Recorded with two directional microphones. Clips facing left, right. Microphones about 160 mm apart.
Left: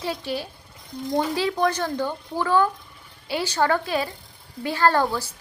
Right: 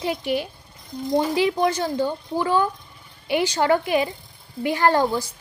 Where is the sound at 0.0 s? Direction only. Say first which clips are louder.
Right 4 dB; 15° right (ahead or behind).